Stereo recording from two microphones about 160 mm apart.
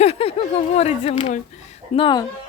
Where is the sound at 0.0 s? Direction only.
40° left (ahead or behind).